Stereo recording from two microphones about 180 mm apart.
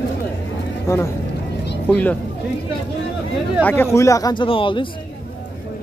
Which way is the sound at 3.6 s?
15° left (ahead or behind).